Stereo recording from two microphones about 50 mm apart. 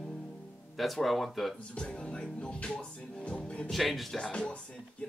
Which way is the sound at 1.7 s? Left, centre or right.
Centre.